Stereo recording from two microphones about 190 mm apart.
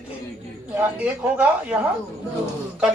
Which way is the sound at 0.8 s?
10° right (ahead or behind).